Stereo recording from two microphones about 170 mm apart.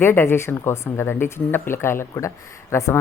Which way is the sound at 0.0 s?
15° left (ahead or behind).